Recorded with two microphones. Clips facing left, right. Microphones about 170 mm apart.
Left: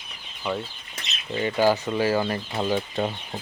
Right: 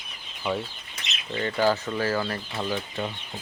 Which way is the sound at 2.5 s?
35° left (ahead or behind).